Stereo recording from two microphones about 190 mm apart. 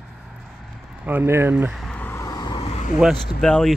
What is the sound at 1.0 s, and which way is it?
Vehicle, 10° right (ahead or behind).